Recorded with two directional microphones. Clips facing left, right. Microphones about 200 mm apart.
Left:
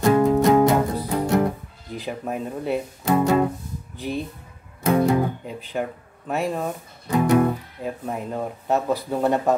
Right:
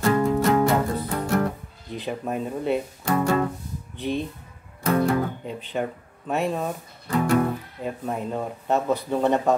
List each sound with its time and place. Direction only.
0.0 s music: 15° left (ahead or behind)
2.0 s speech: centre (ahead or behind)
3.1 s music: 20° left (ahead or behind)
4.8 s speech: 15° left (ahead or behind)
5.7 s speech: centre (ahead or behind)
7.1 s music: 15° left (ahead or behind)
7.8 s speech: centre (ahead or behind)